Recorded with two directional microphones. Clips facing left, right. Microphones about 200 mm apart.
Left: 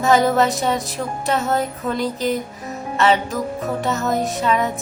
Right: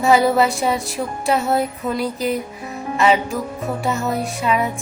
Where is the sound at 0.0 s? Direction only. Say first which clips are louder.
Right 1 dB; 10° right (ahead or behind).